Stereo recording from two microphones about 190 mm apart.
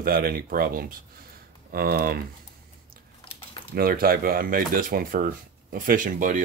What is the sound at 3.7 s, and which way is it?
Speech, 50° right (ahead or behind).